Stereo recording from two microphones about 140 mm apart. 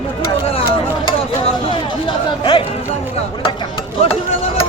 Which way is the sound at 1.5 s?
40° left (ahead or behind).